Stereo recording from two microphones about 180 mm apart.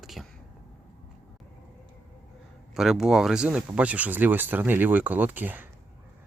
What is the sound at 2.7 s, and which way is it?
Speech, 5° right (ahead or behind).